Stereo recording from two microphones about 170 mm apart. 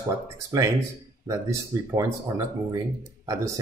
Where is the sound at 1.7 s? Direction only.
20° right (ahead or behind).